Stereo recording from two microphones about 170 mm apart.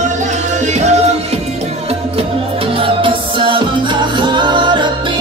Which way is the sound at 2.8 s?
30° right (ahead or behind).